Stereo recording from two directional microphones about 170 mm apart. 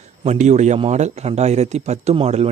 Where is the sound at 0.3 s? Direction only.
45° right (ahead or behind).